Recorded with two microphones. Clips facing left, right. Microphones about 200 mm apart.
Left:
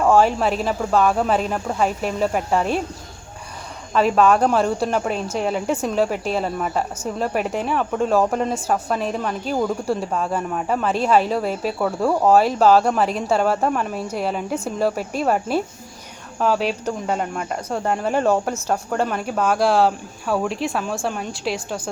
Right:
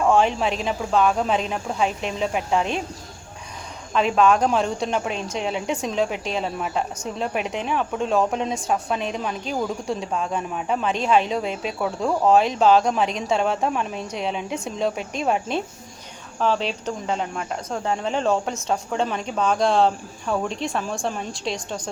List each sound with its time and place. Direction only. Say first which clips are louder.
0.1 s a woman's voice: left 3 dB; 5° left (ahead or behind)
3.9 s a woman's voice: left 2 dB; 5° left (ahead or behind)
16.4 s cricket: left 3 dB; 10° left (ahead or behind)
18.7 s a woman's voice: left 2 dB; 5° left (ahead or behind)